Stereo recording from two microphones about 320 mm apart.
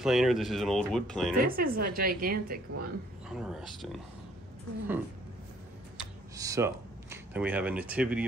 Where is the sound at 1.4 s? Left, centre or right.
Right.